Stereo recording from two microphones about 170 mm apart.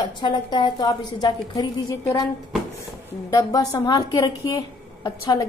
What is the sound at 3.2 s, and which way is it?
A woman's voice, 20° left (ahead or behind).